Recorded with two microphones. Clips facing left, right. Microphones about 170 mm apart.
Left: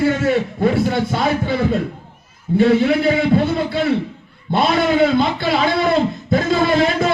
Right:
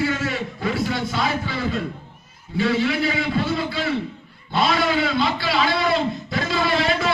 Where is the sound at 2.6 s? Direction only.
55° left (ahead or behind).